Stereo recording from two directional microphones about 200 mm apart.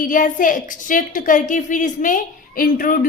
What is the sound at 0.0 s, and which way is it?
A woman's voice, 40° left (ahead or behind).